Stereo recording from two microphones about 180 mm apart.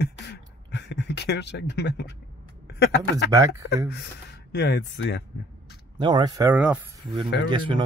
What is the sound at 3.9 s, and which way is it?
Speech, 70° left (ahead or behind).